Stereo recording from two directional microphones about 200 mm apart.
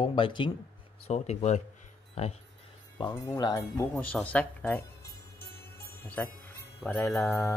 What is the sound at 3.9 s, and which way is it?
Speech, 5° left (ahead or behind).